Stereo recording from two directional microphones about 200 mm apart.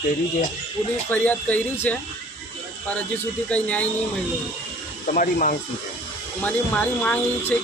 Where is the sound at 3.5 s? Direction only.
5° left (ahead or behind).